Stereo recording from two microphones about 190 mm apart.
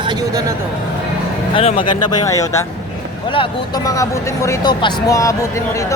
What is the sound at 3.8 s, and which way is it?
Speech, 15° left (ahead or behind).